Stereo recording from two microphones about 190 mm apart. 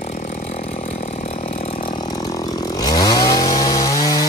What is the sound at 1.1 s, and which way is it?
Vehicle, 30° left (ahead or behind).